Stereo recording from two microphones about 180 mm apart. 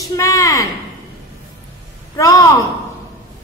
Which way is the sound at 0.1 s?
20° left (ahead or behind).